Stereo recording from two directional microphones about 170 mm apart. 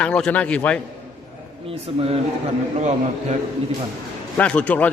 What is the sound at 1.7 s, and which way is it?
A man's voice, 35° right (ahead or behind).